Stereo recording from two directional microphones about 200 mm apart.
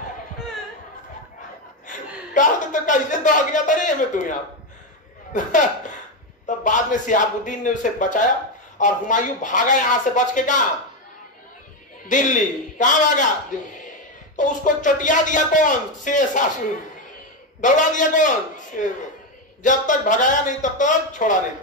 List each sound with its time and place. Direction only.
1.9 s a woman's voice: 40° left (ahead or behind)
12.1 s speech: 40° left (ahead or behind)
14.3 s speech: 40° left (ahead or behind)
17.6 s speech: 40° left (ahead or behind)